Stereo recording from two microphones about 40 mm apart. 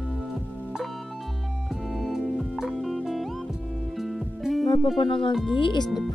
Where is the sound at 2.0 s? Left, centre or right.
Centre.